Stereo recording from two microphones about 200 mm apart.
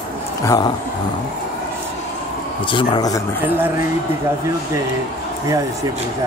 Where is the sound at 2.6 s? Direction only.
25° left (ahead or behind).